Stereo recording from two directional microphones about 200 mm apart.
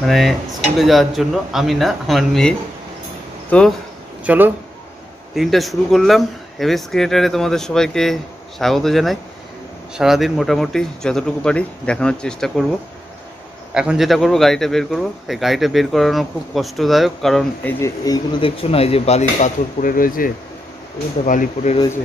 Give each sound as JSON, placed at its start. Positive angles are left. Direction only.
{"t": 0.0, "sound": "a man's voice", "side_deg": 0}
{"t": 4.2, "sound": "a man's voice", "side_deg": -10}
{"t": 13.7, "sound": "a man's voice", "side_deg": 0}